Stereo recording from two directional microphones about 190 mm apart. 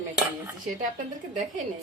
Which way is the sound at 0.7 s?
40° right (ahead or behind).